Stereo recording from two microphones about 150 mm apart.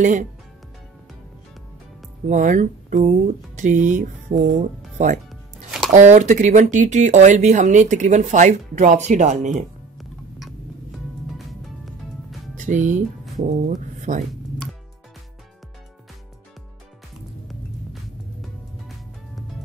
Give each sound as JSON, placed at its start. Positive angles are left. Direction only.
{"t": 0.0, "sound": "speech", "side_deg": -55}
{"t": 2.2, "sound": "speech", "side_deg": -55}
{"t": 5.3, "sound": "music", "side_deg": 0}
{"t": 5.9, "sound": "speech", "side_deg": -55}
{"t": 9.5, "sound": "music", "side_deg": 0}
{"t": 12.5, "sound": "speech", "side_deg": -55}